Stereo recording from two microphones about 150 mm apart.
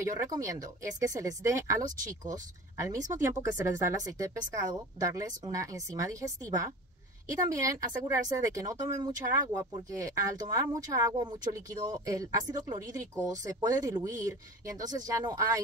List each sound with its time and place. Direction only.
0.0 s speech: 20° right (ahead or behind)
3.1 s speech: 20° right (ahead or behind)